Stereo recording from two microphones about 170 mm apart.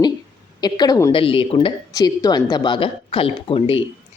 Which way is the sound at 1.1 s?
30° left (ahead or behind).